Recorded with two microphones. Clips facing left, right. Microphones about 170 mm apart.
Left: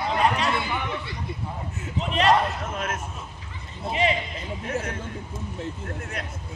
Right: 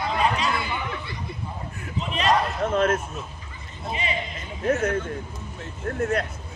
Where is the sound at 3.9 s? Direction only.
80° left.